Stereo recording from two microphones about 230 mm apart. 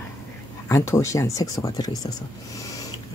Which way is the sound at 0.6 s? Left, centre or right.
Centre.